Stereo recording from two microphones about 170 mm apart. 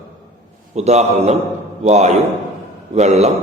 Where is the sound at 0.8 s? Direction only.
40° right (ahead or behind).